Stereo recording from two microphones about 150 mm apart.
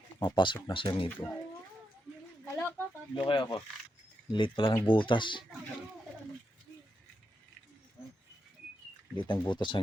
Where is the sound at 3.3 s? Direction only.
30° left (ahead or behind).